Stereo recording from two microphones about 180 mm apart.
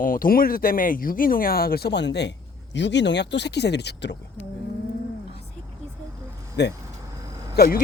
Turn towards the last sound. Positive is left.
turn(degrees=55)  # may be behind; listen again after turning